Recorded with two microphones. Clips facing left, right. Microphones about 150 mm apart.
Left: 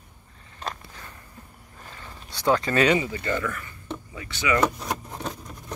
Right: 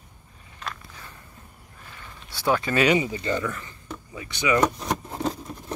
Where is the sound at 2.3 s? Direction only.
20° left (ahead or behind).